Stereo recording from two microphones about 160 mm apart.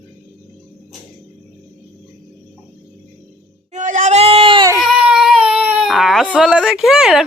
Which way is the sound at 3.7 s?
55° right (ahead or behind).